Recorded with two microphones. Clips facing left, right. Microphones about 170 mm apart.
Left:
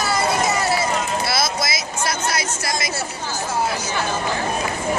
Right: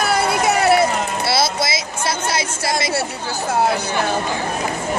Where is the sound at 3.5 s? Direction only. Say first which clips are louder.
Right 6 dB; 60° right (ahead or behind).